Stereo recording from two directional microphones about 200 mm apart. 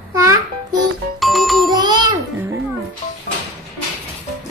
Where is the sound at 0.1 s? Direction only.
15° right (ahead or behind).